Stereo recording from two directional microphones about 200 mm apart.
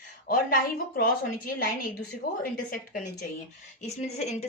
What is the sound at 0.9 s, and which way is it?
Speech, 45° left (ahead or behind).